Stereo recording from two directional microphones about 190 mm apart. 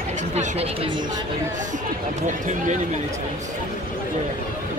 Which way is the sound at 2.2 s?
40° right (ahead or behind).